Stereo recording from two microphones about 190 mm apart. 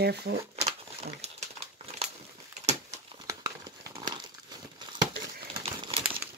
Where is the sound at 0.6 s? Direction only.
35° right (ahead or behind).